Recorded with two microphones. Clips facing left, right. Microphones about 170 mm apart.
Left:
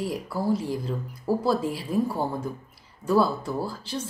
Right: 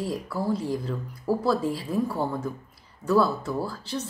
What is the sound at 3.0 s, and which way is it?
Speech, 25° left (ahead or behind).